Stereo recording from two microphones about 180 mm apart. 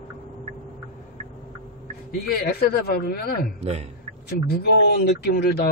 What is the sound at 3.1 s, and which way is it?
Speech, 60° left (ahead or behind).